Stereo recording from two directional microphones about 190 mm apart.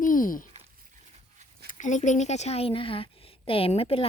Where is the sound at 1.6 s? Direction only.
40° left (ahead or behind).